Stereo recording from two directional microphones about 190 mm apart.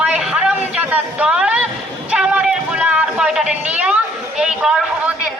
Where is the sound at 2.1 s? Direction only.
5° right (ahead or behind).